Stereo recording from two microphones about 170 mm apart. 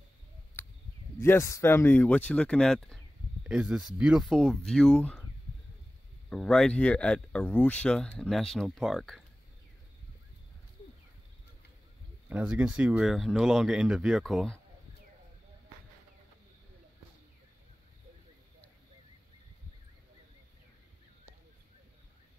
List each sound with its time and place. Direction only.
1.1 s speech: 15° left (ahead or behind)
6.3 s speech: 5° left (ahead or behind)
12.3 s speech: 10° right (ahead or behind)